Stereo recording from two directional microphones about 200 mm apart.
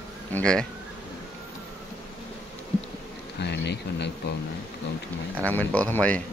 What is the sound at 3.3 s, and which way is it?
Speech, 55° left (ahead or behind).